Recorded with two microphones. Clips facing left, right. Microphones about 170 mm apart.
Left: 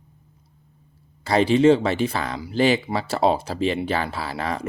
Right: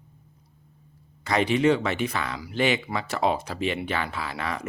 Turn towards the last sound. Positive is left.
turn(degrees=35)  # may be behind; listen again after turning